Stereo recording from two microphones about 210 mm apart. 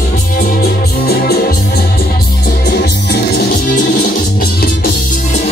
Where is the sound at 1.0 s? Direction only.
45° left (ahead or behind).